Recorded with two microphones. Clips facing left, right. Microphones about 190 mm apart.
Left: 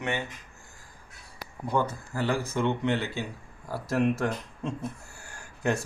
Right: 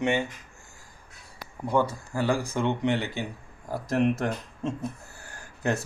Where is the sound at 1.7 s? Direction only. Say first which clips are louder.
Right 3 dB; 10° right (ahead or behind).